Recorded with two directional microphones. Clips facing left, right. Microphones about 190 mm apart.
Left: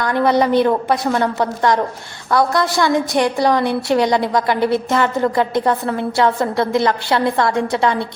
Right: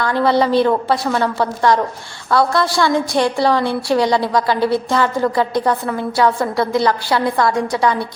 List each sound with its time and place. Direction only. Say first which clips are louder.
0.0 s a woman's voice: even; 20° left (ahead or behind)